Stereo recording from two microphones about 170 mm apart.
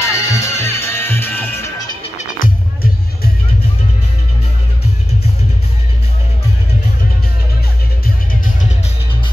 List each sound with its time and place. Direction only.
0.0 s music: 20° left (ahead or behind)
2.1 s music: 55° left (ahead or behind)